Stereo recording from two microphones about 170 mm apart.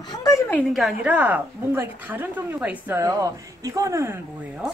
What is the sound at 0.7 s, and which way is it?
A woman's voice, 5° right (ahead or behind).